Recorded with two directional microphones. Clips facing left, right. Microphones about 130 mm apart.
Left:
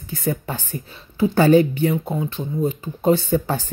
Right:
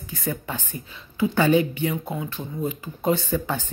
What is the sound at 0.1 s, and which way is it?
Speech, 30° left (ahead or behind).